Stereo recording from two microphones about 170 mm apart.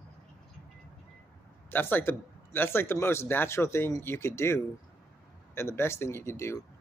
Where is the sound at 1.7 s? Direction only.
10° left (ahead or behind).